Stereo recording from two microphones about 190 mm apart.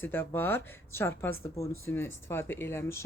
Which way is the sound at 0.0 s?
10° left (ahead or behind).